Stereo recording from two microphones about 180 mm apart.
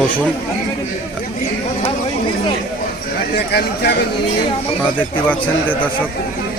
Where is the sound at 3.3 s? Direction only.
65° left (ahead or behind).